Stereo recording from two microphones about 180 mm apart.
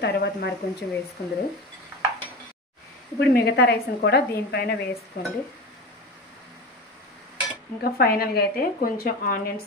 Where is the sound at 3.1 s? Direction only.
65° left (ahead or behind).